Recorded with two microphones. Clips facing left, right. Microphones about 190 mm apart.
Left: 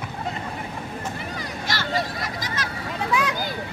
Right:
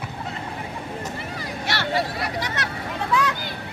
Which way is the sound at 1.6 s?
65° right (ahead or behind).